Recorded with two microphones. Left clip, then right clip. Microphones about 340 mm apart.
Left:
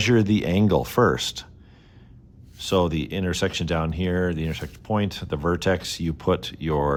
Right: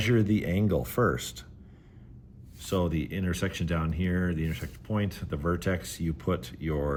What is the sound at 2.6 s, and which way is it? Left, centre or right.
Speech, centre.